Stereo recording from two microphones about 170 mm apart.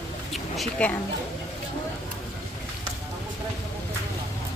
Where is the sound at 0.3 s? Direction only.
5° left (ahead or behind).